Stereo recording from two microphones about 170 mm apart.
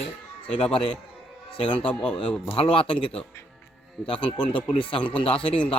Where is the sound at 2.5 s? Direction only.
30° left (ahead or behind).